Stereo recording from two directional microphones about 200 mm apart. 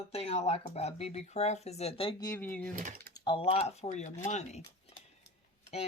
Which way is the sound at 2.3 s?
10° left (ahead or behind).